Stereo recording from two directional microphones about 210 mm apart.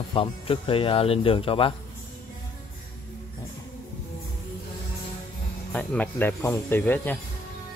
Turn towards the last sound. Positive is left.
turn(degrees=10)  # may be behind; listen again after turning